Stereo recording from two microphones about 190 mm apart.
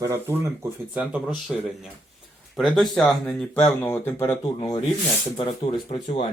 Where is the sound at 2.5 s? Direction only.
Centre (ahead or behind); by 4.8 s 20° left (ahead or behind).